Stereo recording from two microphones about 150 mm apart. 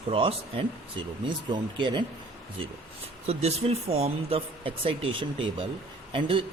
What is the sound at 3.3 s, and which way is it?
Speech, 45° right (ahead or behind).